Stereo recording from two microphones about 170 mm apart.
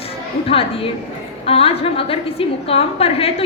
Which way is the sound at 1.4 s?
35° left (ahead or behind).